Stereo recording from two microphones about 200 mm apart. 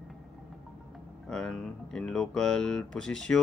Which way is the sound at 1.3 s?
5° left (ahead or behind).